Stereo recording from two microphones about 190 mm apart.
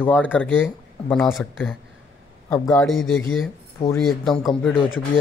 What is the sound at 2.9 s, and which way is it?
Speech, 90° left.